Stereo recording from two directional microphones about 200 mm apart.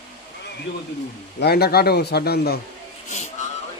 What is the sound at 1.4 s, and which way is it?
A man's voice, 50° left (ahead or behind).